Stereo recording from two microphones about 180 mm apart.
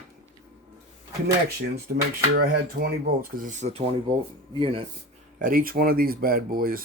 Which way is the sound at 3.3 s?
45° right (ahead or behind).